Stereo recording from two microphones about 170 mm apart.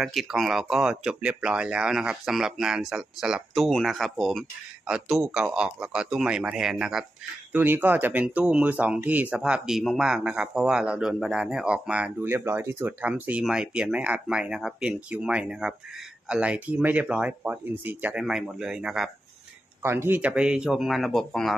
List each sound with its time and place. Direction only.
0.0 s speech: centre (ahead or behind)
19.8 s speech: 15° right (ahead or behind); by 21.5 s centre (ahead or behind)